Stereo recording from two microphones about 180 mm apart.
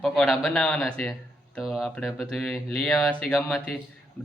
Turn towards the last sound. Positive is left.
turn(degrees=5)  # may be behind; listen again after turning